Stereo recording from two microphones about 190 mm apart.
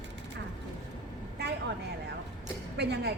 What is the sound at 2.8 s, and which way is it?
Speech, 60° right (ahead or behind).